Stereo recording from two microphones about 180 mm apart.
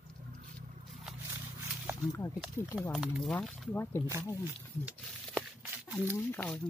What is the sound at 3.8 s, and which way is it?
Speech, 15° left (ahead or behind).